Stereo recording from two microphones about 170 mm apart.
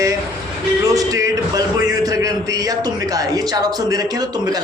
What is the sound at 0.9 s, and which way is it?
A man's voice, 20° right (ahead or behind).